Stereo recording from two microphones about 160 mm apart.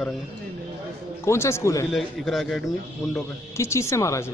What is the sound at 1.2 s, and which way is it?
Speech, 15° left (ahead or behind).